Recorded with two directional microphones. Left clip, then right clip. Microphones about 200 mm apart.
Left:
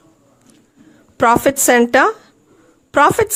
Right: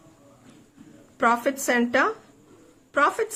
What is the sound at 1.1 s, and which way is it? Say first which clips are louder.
Speech: left 9 dB; 50° left (ahead or behind).